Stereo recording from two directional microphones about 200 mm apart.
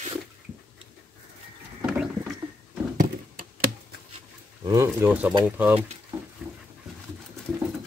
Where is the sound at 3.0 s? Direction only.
45° right (ahead or behind).